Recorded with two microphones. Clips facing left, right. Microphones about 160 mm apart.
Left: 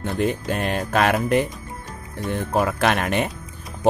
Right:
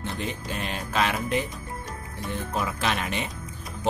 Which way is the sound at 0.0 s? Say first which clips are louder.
Left 9 dB; 55° left (ahead or behind).